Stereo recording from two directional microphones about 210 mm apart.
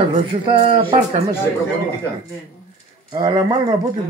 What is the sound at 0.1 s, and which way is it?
Speech, 25° right (ahead or behind).